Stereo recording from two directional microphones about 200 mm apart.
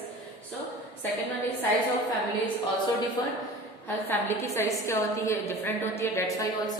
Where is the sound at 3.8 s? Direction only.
10° left (ahead or behind).